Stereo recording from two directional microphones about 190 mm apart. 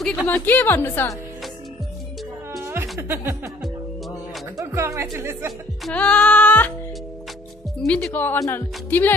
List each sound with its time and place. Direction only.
0.0 s speech: 5° left (ahead or behind)
2.6 s music: 15° right (ahead or behind)
4.6 s speech: 15° right (ahead or behind)
5.9 s speech: 5° left (ahead or behind)
7.8 s speech: 5° left (ahead or behind)